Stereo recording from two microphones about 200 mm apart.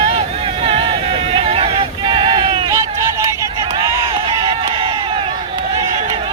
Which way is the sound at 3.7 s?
25° right (ahead or behind).